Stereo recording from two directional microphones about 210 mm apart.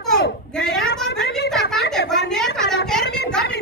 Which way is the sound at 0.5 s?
5° left (ahead or behind).